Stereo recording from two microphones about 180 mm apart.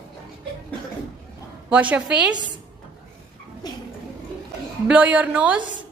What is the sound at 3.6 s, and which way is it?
Speech, 20° left (ahead or behind).